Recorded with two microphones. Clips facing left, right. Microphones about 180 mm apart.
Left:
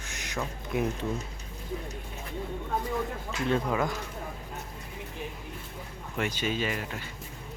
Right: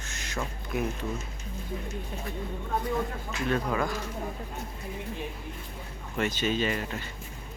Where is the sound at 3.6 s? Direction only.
15° left (ahead or behind).